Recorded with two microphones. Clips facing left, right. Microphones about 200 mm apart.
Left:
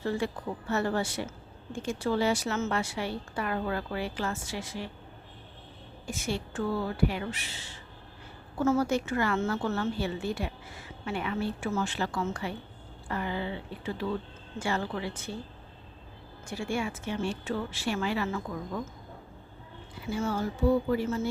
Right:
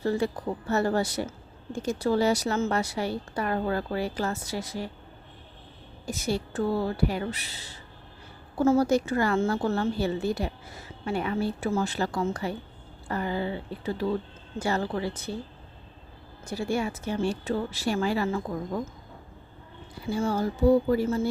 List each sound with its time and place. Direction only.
0.0 s speech: 40° right (ahead or behind)
6.1 s speech: 40° right (ahead or behind)
16.5 s speech: 40° right (ahead or behind)
20.0 s speech: 35° right (ahead or behind)